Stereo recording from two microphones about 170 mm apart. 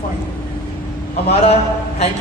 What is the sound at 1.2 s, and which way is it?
Speech, 35° left (ahead or behind).